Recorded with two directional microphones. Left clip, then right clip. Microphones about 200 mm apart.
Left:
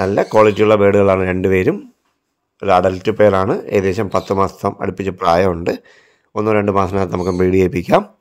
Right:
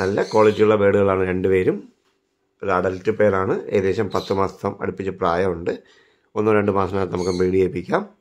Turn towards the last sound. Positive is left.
turn(degrees=35)  # may be behind; listen again after turning